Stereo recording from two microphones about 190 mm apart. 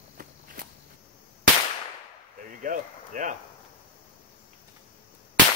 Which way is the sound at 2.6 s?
45° right (ahead or behind).